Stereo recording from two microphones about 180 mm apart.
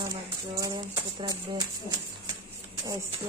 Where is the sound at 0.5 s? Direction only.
25° right (ahead or behind).